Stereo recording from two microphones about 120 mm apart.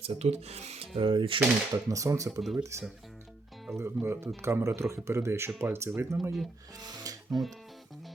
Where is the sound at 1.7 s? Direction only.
25° right (ahead or behind).